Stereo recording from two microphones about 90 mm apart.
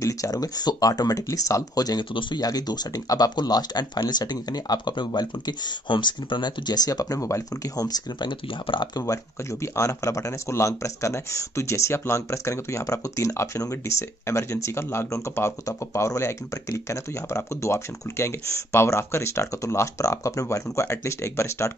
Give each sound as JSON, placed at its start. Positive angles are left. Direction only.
{"t": 0.0, "sound": "speech", "side_deg": 40}